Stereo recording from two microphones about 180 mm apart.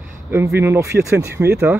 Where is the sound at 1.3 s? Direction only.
65° right (ahead or behind).